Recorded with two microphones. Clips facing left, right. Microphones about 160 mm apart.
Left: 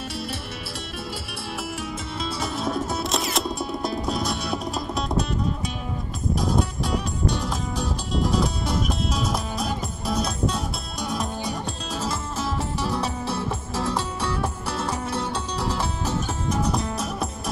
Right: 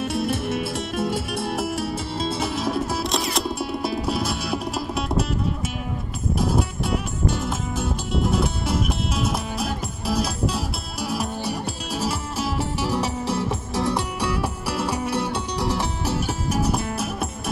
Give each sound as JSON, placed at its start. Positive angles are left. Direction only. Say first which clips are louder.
{"t": 0.0, "sound": "music", "louder": "right 8 dB", "side_deg": -50}
{"t": 2.6, "sound": "music", "louder": "right 2 dB", "side_deg": -5}
{"t": 6.3, "sound": "music", "louder": "right 1 dB", "side_deg": -5}